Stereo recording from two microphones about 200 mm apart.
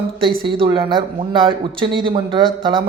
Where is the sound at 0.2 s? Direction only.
25° right (ahead or behind).